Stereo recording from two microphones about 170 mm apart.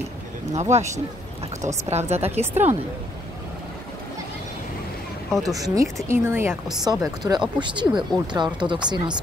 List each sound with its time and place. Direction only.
0.6 s speech: 40° right (ahead or behind)
1.9 s speech: 40° right (ahead or behind)
5.4 s a woman's voice: 20° right (ahead or behind)